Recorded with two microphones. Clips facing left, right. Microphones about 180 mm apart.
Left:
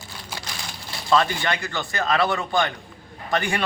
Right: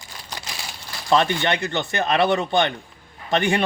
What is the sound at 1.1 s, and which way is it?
Speech, 25° right (ahead or behind).